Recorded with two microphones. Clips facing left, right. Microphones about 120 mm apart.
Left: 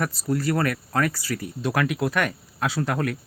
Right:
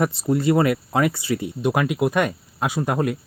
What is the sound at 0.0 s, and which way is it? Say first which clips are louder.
Speech: right 5 dB; 20° right (ahead or behind).